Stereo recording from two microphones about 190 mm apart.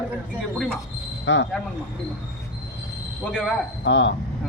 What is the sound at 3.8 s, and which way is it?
Speech, 70° left (ahead or behind).